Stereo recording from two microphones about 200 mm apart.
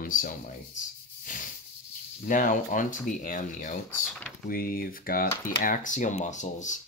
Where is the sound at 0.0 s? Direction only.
40° left (ahead or behind).